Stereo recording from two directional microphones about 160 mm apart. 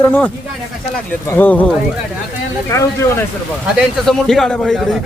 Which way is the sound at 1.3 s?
10° left (ahead or behind).